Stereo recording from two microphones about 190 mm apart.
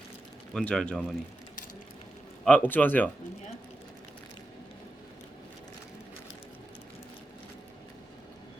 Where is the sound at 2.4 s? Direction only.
10° left (ahead or behind).